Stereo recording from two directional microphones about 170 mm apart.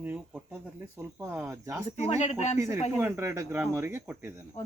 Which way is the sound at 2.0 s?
40° left (ahead or behind).